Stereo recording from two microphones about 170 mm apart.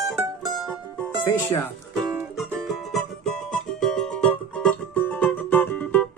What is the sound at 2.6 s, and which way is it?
Music, centre (ahead or behind).